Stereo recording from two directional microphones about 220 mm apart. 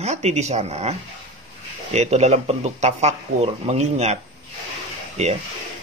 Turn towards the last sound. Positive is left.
turn(degrees=-30)  # may be behind; listen again after turning